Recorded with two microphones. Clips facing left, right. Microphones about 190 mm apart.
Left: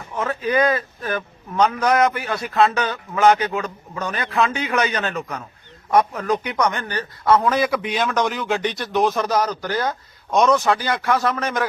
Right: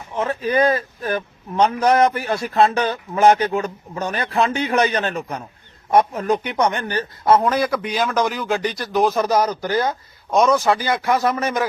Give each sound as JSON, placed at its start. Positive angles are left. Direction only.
{"t": 0.1, "sound": "speech", "side_deg": -25}
{"t": 0.5, "sound": "a man's voice", "side_deg": -35}
{"t": 7.4, "sound": "speech", "side_deg": 0}
{"t": 9.3, "sound": "speech", "side_deg": -15}
{"t": 10.3, "sound": "speech", "side_deg": 0}